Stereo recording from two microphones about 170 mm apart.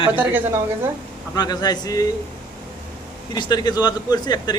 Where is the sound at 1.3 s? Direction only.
25° left (ahead or behind).